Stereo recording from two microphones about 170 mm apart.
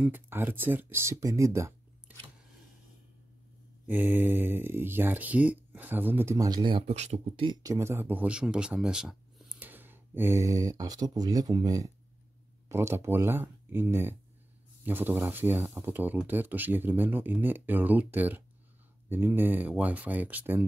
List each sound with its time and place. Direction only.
0.0 s speech: 10° right (ahead or behind)
3.8 s speech: 10° right (ahead or behind)
6.9 s speech: 40° right (ahead or behind)
7.4 s speech: 20° right (ahead or behind)